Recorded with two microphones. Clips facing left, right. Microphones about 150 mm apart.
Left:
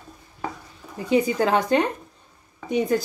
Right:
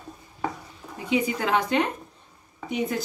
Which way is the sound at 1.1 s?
40° left (ahead or behind).